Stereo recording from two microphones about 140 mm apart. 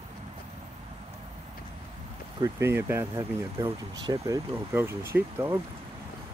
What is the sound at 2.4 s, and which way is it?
Speech, 20° right (ahead or behind).